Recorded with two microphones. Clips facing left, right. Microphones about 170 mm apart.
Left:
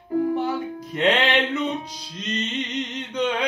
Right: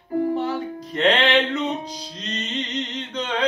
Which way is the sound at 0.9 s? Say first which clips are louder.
Right 2 dB; 10° left (ahead or behind).